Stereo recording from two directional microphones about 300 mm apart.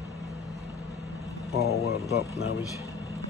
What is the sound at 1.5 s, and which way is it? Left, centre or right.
Speech, left.